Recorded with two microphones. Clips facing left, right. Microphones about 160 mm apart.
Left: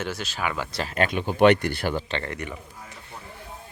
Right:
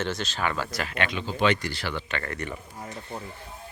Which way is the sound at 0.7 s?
35° left (ahead or behind).